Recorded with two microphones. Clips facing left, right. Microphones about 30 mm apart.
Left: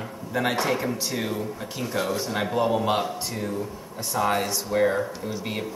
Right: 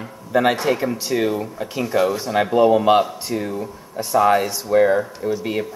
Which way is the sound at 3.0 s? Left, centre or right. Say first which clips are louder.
Right 7 dB; centre.